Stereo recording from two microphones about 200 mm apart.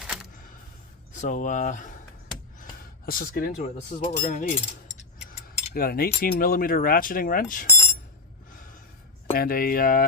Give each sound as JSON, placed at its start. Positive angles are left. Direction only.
{"t": 0.0, "sound": "camera", "side_deg": 0}
{"t": 1.1, "sound": "speech", "side_deg": 40}
{"t": 3.1, "sound": "speech", "side_deg": 45}
{"t": 7.7, "sound": "a sound", "side_deg": 15}
{"t": 9.3, "sound": "speech", "side_deg": 45}